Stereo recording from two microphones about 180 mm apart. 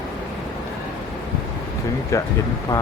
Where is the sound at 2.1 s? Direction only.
15° left (ahead or behind).